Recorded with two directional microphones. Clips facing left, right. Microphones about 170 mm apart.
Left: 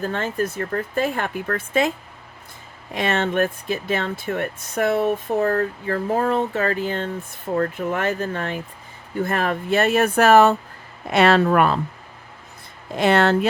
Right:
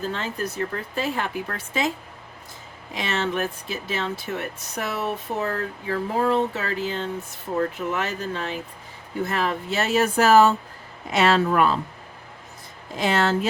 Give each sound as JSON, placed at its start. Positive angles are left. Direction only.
{"t": 0.0, "sound": "speech", "side_deg": 50}
{"t": 2.9, "sound": "speech", "side_deg": 55}
{"t": 13.0, "sound": "speech", "side_deg": 60}